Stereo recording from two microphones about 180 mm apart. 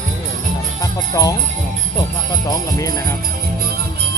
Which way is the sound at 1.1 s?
20° left (ahead or behind).